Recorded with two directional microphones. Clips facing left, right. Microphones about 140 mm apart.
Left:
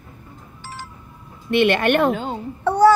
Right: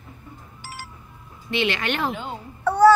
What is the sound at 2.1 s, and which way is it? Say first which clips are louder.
Speech: left 6 dB; 40° left (ahead or behind).